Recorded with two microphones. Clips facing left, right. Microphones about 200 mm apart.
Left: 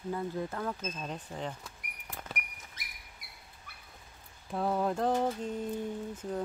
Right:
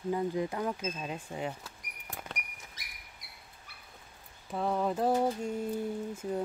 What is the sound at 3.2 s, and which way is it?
Train, 55° left (ahead or behind).